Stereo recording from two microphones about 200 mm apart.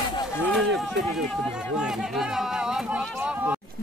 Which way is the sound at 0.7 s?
Centre (ahead or behind).